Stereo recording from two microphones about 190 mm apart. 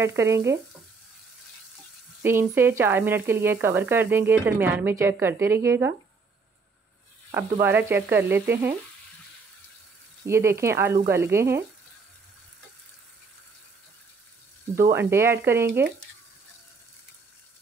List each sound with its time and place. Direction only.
0.0 s speech: 15° right (ahead or behind)
2.2 s speech: 10° right (ahead or behind)
7.6 s speech: 10° right (ahead or behind)
10.2 s speech: 15° right (ahead or behind)
14.8 s speech: 15° right (ahead or behind)